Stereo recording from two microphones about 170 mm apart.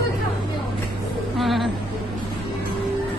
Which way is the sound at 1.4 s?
Centre (ahead or behind).